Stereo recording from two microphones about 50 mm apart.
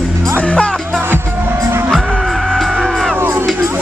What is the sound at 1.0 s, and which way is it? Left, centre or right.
Music, right.